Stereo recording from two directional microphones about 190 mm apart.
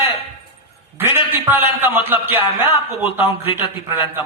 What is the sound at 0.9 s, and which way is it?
A man's voice, 10° right (ahead or behind).